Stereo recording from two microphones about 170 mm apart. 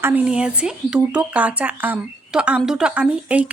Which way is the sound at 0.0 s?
10° right (ahead or behind).